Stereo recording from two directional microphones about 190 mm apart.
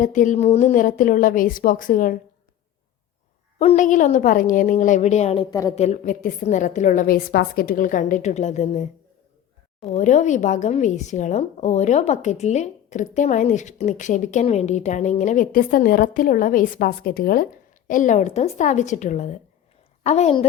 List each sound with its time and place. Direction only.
0.0 s a woman's voice: 40° left (ahead or behind)
3.6 s speech: 40° left (ahead or behind)
5.5 s a woman's voice: 20° left (ahead or behind)
5.7 s speech: 35° left (ahead or behind)
9.9 s speech: 40° left (ahead or behind)